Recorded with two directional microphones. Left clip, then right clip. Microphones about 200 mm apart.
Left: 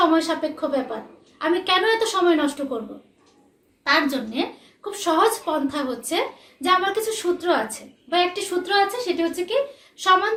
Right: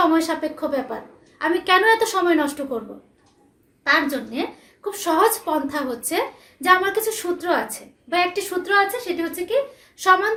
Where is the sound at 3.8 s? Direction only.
25° right (ahead or behind).